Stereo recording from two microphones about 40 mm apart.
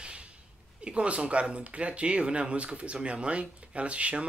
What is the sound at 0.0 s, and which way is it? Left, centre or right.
Sneeze, right.